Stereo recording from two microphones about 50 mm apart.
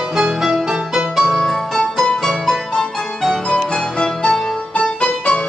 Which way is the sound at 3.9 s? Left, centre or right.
Centre.